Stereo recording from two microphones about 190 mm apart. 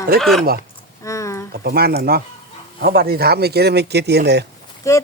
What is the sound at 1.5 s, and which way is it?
A man's voice, 55° right (ahead or behind).